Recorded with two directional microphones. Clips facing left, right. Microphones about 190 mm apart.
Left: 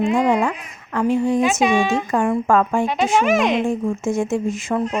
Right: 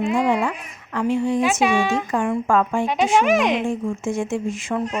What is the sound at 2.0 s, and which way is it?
Speech, 45° left (ahead or behind).